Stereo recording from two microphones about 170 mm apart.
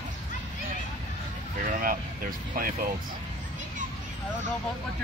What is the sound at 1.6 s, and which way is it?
Speech, 55° right (ahead or behind).